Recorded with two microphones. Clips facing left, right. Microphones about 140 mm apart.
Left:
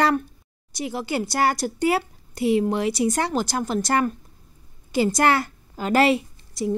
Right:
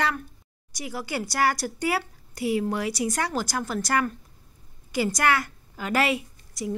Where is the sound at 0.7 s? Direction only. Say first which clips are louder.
Left 5 dB; 25° left (ahead or behind).